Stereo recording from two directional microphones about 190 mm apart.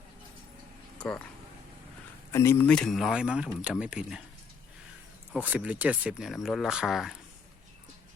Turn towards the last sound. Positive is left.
turn(degrees=0)  # may be behind; listen again after turning